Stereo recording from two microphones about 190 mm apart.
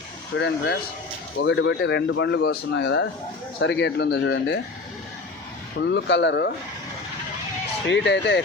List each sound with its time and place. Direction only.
0.3 s speech: 65° left (ahead or behind)
5.8 s speech: 65° left (ahead or behind)
7.9 s speech: 70° left (ahead or behind)